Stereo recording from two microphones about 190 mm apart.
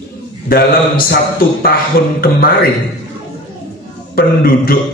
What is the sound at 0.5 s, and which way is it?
Speech, 50° left (ahead or behind).